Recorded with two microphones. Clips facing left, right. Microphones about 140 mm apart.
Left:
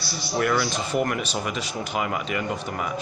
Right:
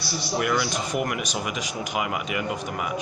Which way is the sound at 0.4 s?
10° right (ahead or behind).